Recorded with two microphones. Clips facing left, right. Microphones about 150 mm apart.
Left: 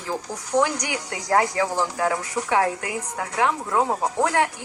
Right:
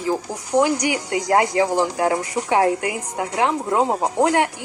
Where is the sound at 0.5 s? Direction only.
10° right (ahead or behind).